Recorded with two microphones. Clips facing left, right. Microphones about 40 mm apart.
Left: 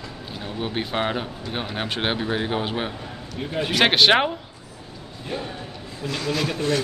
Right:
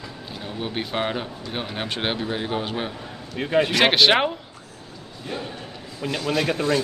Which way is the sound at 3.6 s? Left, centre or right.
Centre.